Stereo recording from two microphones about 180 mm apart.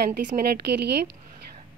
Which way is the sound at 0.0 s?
55° right (ahead or behind).